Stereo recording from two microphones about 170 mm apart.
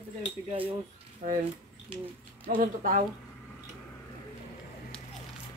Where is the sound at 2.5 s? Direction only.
55° right (ahead or behind).